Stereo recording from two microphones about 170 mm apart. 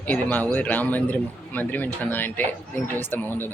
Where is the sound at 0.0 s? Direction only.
10° left (ahead or behind).